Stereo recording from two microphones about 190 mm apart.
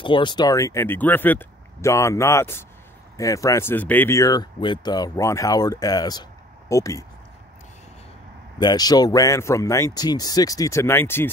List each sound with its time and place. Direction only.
0.0 s speech: 25° left (ahead or behind)
8.5 s speech: 20° left (ahead or behind)